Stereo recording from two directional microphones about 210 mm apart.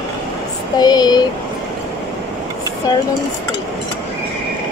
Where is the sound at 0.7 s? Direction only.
20° left (ahead or behind).